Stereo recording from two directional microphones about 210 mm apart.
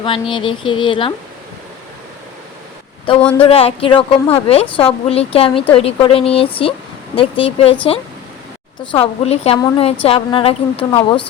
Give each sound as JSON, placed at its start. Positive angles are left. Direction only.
{"t": 0.0, "sound": "a woman's voice", "side_deg": 25}
{"t": 3.3, "sound": "a woman's voice", "side_deg": 25}
{"t": 8.8, "sound": "a woman's voice", "side_deg": 25}